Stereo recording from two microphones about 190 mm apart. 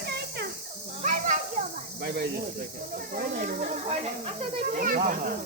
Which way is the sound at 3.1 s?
45° right (ahead or behind).